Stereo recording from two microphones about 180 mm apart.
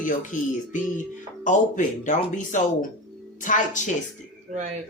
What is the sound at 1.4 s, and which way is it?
Speech, 45° left (ahead or behind).